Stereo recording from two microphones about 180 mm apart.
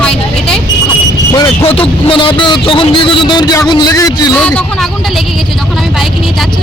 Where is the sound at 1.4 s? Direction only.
30° left (ahead or behind).